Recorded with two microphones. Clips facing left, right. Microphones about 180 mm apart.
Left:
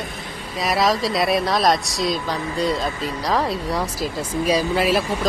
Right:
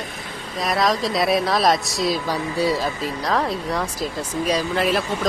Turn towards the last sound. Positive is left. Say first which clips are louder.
# left 2 dB
turn(degrees=5)  # may be behind; listen again after turning